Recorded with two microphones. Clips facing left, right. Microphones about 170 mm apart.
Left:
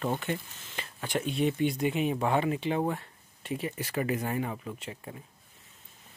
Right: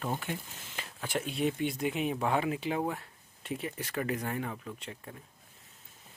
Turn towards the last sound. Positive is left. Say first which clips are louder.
# left 3 dB
turn(degrees=10)  # may be behind; listen again after turning